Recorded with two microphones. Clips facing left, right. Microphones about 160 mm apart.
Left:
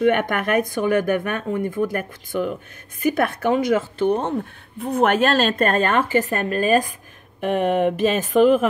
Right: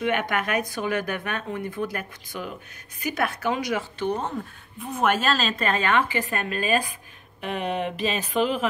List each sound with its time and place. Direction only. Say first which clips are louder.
0.0 s speech: left 6 dB; 50° left (ahead or behind)